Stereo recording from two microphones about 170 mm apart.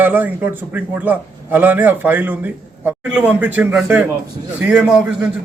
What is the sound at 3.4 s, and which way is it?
A man's voice, 10° right (ahead or behind).